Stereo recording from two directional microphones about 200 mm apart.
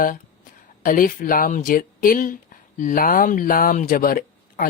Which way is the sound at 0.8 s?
45° left (ahead or behind).